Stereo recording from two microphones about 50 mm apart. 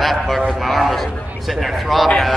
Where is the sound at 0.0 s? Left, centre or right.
Centre.